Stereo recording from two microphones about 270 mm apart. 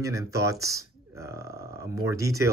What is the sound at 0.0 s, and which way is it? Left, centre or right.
Speech, centre.